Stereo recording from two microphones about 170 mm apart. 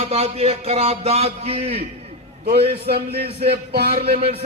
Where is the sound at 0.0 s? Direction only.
35° right (ahead or behind).